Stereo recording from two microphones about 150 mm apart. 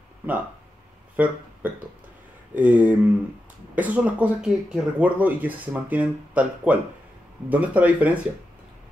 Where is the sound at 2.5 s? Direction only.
10° right (ahead or behind).